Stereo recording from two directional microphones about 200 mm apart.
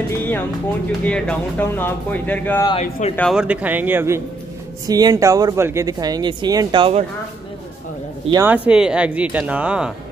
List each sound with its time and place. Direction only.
1.0 s speech: 5° left (ahead or behind)
2.8 s speech: 35° left (ahead or behind)
3.2 s speech: centre (ahead or behind); by 7.1 s 25° right (ahead or behind)
8.3 s speech: 10° right (ahead or behind)